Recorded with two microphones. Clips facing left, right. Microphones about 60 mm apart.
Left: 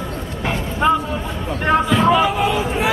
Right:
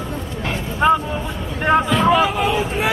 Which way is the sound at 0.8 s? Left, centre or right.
Centre.